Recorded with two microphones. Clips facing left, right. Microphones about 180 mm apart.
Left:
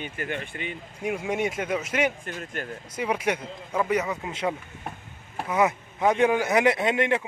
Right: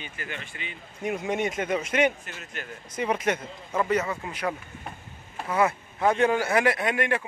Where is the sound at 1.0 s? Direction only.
10° left (ahead or behind).